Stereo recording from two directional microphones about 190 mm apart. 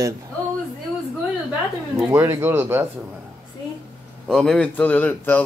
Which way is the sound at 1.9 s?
10° right (ahead or behind).